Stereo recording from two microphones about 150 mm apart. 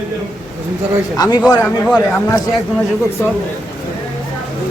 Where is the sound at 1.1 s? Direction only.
25° left (ahead or behind).